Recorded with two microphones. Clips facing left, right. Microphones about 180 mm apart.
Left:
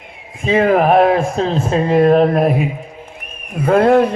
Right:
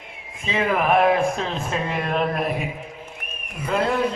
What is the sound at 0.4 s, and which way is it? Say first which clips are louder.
Speech: left 9 dB; 50° left (ahead or behind).